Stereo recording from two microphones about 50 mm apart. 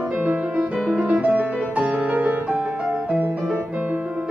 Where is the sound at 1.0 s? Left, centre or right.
Right.